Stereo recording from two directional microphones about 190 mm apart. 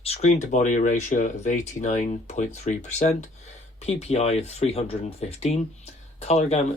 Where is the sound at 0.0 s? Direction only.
35° left (ahead or behind).